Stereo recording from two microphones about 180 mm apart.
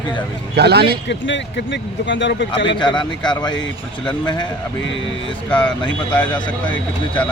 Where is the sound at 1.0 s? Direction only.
80° left.